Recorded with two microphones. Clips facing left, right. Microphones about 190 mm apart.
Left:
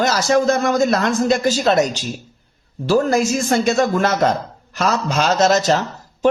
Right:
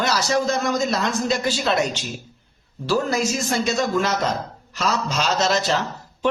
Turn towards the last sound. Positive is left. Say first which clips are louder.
# left 6 dB
turn(degrees=45)  # may be behind; listen again after turning